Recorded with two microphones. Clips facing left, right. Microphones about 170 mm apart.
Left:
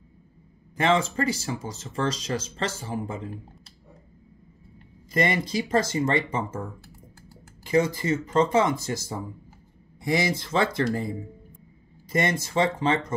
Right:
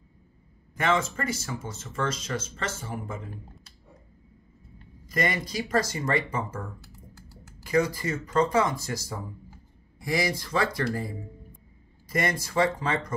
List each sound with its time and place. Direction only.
0.7 s speech: 30° left (ahead or behind)
5.1 s speech: 25° left (ahead or behind)
7.6 s speech: 25° left (ahead or behind)